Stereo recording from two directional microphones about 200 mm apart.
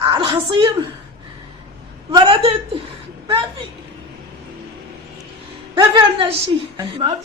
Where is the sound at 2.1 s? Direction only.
25° right (ahead or behind).